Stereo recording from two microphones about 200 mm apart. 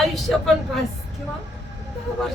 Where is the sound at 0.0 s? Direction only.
Centre (ahead or behind).